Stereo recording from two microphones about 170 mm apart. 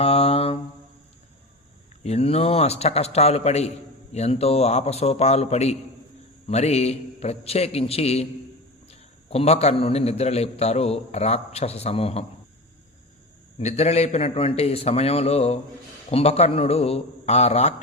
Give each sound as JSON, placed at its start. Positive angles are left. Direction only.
{"t": 0.0, "sound": "mantra", "side_deg": 35}
{"t": 2.0, "sound": "a man's voice", "side_deg": 35}
{"t": 13.6, "sound": "a man's voice", "side_deg": 40}